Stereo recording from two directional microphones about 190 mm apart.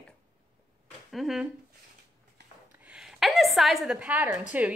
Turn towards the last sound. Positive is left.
turn(degrees=-5)  # may be behind; listen again after turning